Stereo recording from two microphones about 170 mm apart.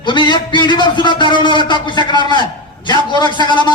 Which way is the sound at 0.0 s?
25° left (ahead or behind).